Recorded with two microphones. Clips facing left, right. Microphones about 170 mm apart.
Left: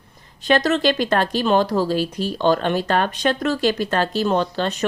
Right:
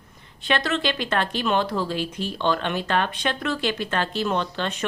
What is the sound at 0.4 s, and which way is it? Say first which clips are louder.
Speech: left 7 dB; 40° left (ahead or behind).